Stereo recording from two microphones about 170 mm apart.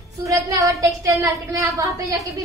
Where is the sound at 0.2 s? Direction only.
20° right (ahead or behind).